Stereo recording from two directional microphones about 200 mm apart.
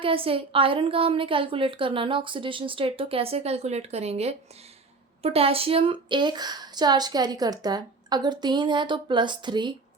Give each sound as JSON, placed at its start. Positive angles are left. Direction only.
{"t": 0.0, "sound": "a woman's voice", "side_deg": -25}